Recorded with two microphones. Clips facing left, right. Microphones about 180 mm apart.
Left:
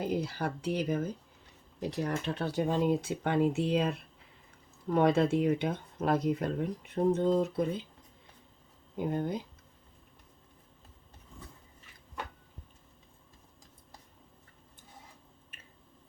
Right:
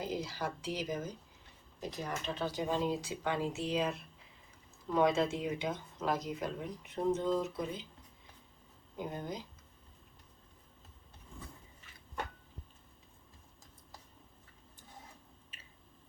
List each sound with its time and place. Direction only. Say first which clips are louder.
0.0 s speech: left 5 dB; 60° left (ahead or behind)
4.9 s speech: left 4 dB; 60° left (ahead or behind)
9.0 s speech: left 9 dB; 60° left (ahead or behind)
15.5 s squish: left 3 dB; 55° left (ahead or behind)